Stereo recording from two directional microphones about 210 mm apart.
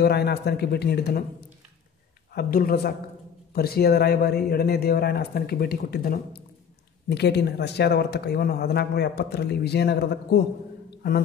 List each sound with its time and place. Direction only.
0.0 s speech: 50° left (ahead or behind)
2.3 s a man's voice: 45° left (ahead or behind)